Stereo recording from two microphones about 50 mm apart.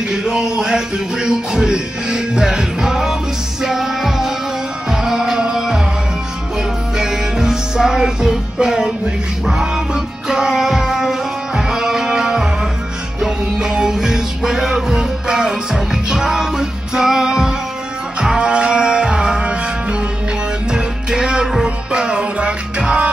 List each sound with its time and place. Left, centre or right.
0.1 s music: centre
7.0 s music: centre